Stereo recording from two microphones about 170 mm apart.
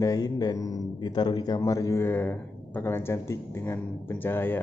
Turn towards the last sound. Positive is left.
turn(degrees=10)  # may be behind; listen again after turning